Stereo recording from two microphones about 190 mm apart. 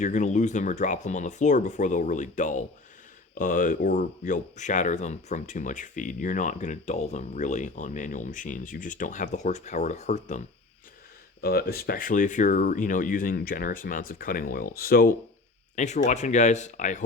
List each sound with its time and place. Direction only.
0.0 s speech: 40° left (ahead or behind)
11.3 s speech: 55° left (ahead or behind)
15.7 s speech: 40° left (ahead or behind)